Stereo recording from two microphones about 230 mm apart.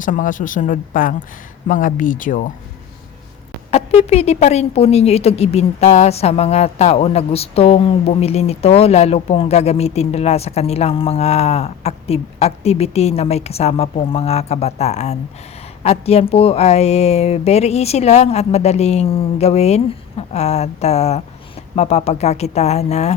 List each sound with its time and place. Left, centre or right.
0.0 s speech: left
3.7 s a woman's voice: left